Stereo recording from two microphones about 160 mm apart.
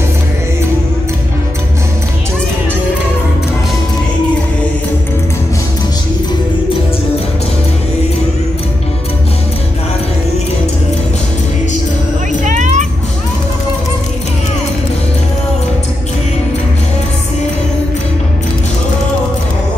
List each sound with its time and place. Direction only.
12.4 s music: 50° right (ahead or behind)